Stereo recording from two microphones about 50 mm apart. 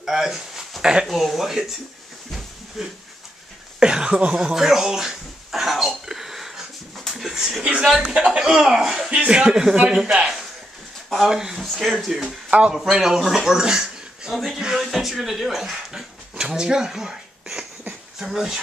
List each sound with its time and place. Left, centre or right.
0.0 s speech: centre
2.8 s speech: centre
3.8 s a sound: centre
8.0 s speech: centre
8.4 s speech: centre
9.1 s speech: centre
12.4 s speech: right
12.7 s a man's voice: centre